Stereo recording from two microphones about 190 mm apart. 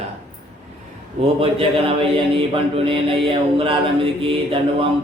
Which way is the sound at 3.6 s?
30° right (ahead or behind).